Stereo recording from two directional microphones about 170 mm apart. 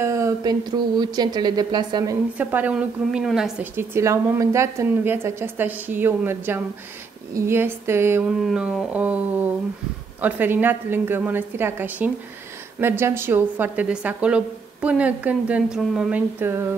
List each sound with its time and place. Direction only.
0.0 s speech: 20° right (ahead or behind)
2.3 s a woman's voice: 10° right (ahead or behind)
3.7 s a woman's voice: 15° right (ahead or behind)
8.4 s a woman's voice: 5° right (ahead or behind)